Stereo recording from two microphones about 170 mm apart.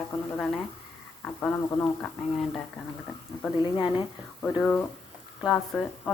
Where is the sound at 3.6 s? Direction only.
30° left (ahead or behind).